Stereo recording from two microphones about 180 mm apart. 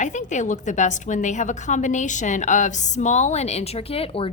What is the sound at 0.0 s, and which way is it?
A woman's voice, 40° left (ahead or behind).